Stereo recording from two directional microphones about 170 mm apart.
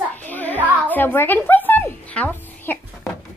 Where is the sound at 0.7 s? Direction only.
10° left (ahead or behind).